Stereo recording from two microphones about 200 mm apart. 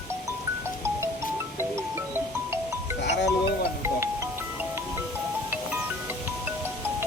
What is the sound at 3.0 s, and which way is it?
Music, 60° left (ahead or behind).